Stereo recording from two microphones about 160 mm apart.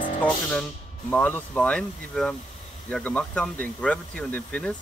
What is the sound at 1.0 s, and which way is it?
Speech, 10° left (ahead or behind).